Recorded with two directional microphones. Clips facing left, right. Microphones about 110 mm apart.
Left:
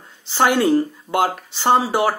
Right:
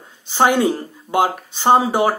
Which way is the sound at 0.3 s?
15° right (ahead or behind).